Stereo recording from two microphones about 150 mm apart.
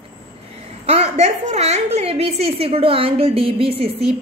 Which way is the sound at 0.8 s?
45° right (ahead or behind).